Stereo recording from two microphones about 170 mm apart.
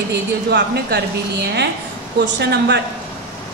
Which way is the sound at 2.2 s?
90° right.